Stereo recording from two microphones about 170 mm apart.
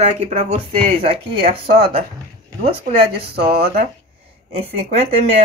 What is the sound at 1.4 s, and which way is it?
Speech, 65° right (ahead or behind).